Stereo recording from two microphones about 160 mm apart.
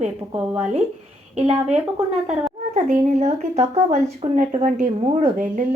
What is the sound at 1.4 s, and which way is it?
Speech, 45° right (ahead or behind).